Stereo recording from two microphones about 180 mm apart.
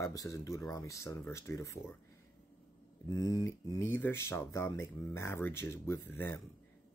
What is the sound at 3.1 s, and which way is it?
Speech, 20° left (ahead or behind).